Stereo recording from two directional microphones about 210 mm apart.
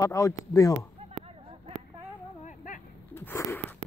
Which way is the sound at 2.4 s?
40° left (ahead or behind).